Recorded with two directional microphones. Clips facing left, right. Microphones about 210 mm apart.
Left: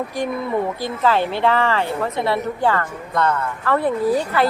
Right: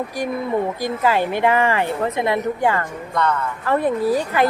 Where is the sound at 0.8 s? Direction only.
10° right (ahead or behind).